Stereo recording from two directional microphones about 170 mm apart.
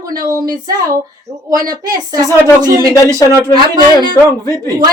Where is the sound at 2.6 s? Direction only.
20° right (ahead or behind).